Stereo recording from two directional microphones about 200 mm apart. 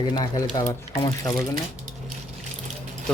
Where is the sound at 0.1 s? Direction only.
20° left (ahead or behind).